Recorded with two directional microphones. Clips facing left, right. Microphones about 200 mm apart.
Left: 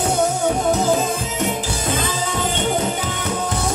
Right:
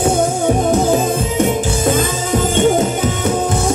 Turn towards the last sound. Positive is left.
turn(degrees=-45)  # may be behind; listen again after turning